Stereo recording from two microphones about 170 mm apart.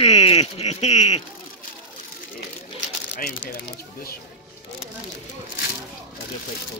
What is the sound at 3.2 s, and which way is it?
Speech, 65° left (ahead or behind).